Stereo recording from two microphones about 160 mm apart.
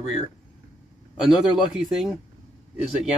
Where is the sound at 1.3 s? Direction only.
5° right (ahead or behind).